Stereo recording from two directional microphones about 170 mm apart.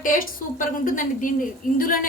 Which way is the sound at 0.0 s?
55° left (ahead or behind).